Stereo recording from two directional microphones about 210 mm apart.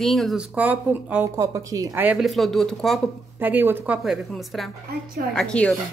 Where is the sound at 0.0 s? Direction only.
Centre (ahead or behind).